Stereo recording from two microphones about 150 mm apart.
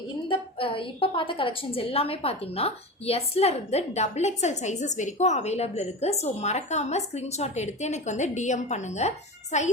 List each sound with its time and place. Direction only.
0.3 s a woman's voice: 35° left (ahead or behind)